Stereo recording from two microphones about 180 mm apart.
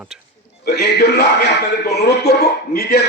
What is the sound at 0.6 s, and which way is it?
A man's voice, 65° left (ahead or behind).